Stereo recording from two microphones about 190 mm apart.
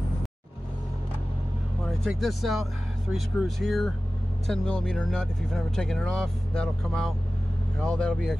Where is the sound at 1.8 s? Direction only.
Centre (ahead or behind).